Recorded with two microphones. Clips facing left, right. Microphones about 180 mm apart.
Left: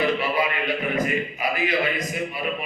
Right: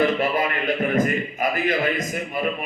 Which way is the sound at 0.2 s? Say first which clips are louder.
Right 2 dB; 50° right (ahead or behind).